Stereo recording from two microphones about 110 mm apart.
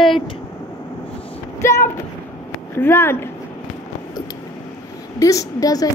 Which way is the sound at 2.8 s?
20° left (ahead or behind).